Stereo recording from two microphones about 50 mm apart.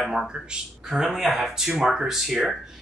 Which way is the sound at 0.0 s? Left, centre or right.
Centre.